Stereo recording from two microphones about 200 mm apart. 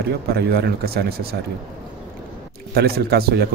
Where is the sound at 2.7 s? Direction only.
50° right (ahead or behind).